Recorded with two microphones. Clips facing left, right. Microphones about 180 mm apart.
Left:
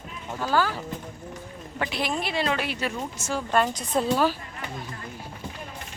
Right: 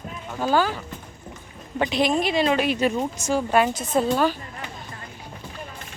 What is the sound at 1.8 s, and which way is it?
Speech, 20° right (ahead or behind).